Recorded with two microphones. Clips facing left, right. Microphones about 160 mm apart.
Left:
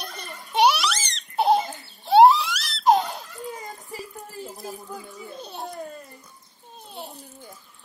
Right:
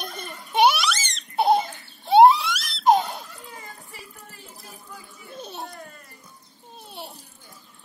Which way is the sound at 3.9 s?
40° left (ahead or behind).